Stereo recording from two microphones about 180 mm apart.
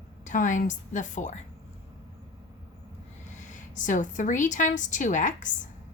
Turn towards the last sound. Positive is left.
turn(degrees=45)  # may be behind; listen again after turning